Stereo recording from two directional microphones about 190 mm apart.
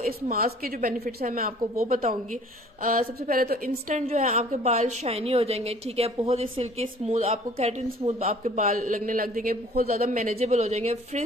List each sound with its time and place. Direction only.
0.0 s a woman's voice: 50° right (ahead or behind)
4.0 s a woman's voice: 35° right (ahead or behind)
10.3 s a woman's voice: 35° right (ahead or behind)